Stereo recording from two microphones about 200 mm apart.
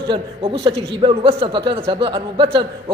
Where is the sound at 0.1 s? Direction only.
25° right (ahead or behind).